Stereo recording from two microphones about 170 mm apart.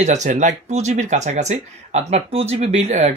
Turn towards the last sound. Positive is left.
turn(degrees=-40)  # may be behind; listen again after turning